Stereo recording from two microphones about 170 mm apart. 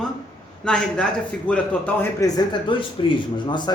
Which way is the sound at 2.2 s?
25° left (ahead or behind).